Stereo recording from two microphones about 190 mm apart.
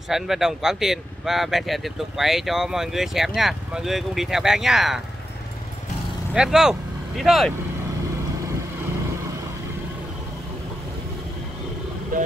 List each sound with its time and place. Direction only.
0.1 s speech: centre (ahead or behind)
6.3 s speech: 5° right (ahead or behind)
12.1 s speech: 45° right (ahead or behind)